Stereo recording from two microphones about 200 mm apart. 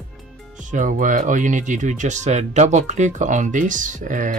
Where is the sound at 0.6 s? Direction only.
40° right (ahead or behind).